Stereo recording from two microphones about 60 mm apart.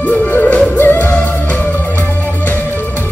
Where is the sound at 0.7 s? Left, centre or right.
Left.